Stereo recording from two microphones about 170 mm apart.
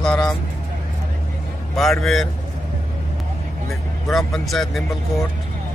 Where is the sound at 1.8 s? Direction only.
Centre (ahead or behind).